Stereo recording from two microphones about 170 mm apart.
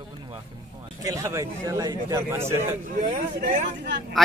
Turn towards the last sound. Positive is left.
turn(degrees=-90)